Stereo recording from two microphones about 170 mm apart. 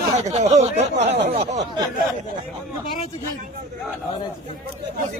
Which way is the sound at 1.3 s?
45° right (ahead or behind).